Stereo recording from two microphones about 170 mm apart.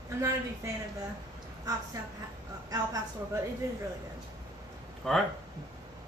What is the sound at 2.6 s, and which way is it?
Speech, 20° right (ahead or behind).